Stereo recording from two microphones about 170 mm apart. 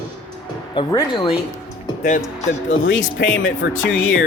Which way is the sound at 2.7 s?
90° left.